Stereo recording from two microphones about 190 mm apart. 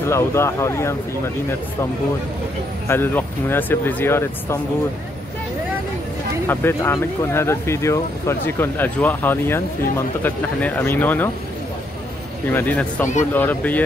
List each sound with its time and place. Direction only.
0.0 s speech: 15° left (ahead or behind)
2.9 s speech: 10° left (ahead or behind)
6.4 s speech: 10° left (ahead or behind)
12.4 s speech: 10° left (ahead or behind)